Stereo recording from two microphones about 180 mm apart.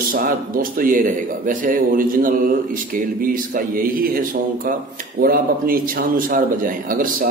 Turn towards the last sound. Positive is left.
turn(degrees=-50)  # may be behind; listen again after turning